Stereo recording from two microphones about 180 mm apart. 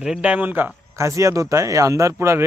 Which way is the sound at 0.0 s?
5° right (ahead or behind).